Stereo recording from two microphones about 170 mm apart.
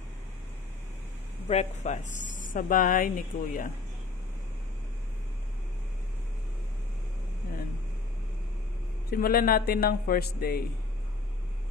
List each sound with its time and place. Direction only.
1.5 s speech: 40° left (ahead or behind)
9.1 s a man's voice: 60° left (ahead or behind)